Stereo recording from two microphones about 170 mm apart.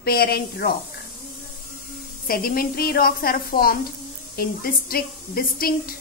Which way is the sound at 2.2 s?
60° left (ahead or behind).